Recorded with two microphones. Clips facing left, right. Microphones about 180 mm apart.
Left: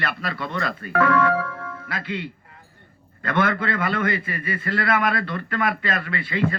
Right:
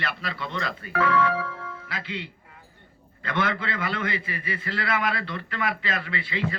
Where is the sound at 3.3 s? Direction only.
50° left (ahead or behind).